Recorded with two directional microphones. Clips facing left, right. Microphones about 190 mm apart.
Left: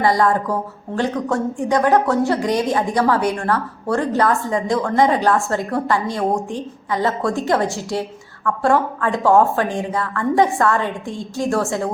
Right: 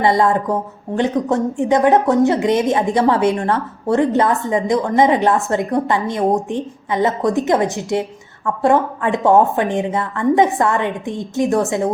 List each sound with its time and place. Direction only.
0.0 s a woman's voice: 25° right (ahead or behind)